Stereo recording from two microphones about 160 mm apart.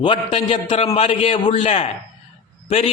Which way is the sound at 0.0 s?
35° left (ahead or behind).